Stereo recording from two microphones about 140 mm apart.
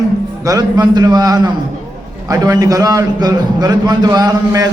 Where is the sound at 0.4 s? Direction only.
30° right (ahead or behind).